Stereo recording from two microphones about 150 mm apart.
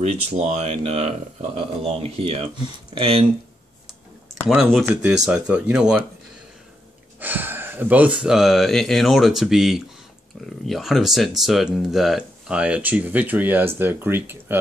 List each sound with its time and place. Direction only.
0.0 s speech: 50° right (ahead or behind)
5.1 s speech: 5° right (ahead or behind)
7.2 s speech: 10° right (ahead or behind)